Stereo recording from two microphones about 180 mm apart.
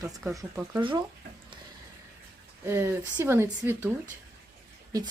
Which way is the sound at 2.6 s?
15° right (ahead or behind).